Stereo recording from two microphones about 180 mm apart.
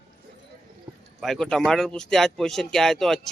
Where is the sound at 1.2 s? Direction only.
Centre (ahead or behind).